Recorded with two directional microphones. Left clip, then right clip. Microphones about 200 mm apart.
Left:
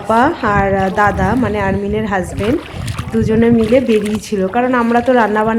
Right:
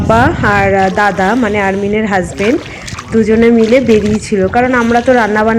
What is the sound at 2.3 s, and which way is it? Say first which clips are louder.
Speech: right 5 dB; 30° left (ahead or behind).